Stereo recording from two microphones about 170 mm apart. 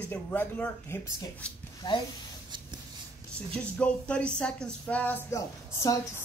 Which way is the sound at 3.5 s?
5° left (ahead or behind).